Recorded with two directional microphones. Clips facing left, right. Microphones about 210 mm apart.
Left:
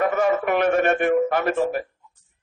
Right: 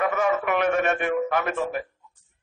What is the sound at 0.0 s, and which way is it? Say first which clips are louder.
A man's voice: left 3 dB; 40° left (ahead or behind).